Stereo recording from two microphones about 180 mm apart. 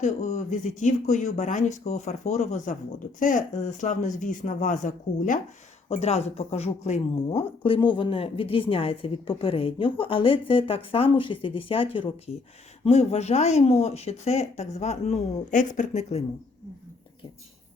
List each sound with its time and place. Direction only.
0.0 s speech: 40° left (ahead or behind)